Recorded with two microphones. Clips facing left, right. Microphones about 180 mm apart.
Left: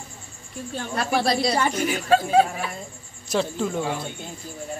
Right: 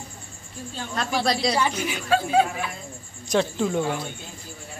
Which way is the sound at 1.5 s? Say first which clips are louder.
Left 2 dB; 50° left (ahead or behind).